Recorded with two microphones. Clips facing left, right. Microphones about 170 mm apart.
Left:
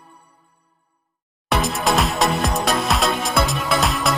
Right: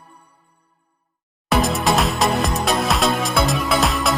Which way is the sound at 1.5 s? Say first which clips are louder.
Right 2 dB; centre (ahead or behind).